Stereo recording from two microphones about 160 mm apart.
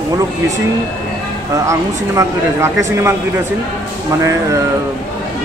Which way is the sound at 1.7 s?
20° right (ahead or behind).